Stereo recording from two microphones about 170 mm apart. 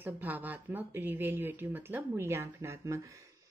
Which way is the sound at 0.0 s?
10° right (ahead or behind).